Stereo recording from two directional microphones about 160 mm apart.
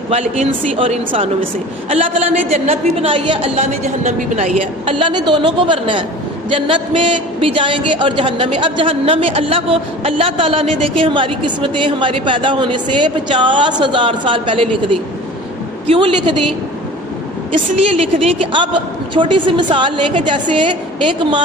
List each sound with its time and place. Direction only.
0.1 s a man's voice: 40° right (ahead or behind)
17.8 s a man's voice: 35° right (ahead or behind)